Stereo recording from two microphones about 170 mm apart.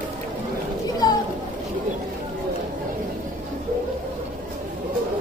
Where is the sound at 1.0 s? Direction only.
25° left (ahead or behind).